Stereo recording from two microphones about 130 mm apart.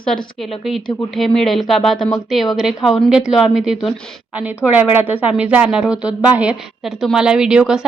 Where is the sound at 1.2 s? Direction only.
Centre (ahead or behind).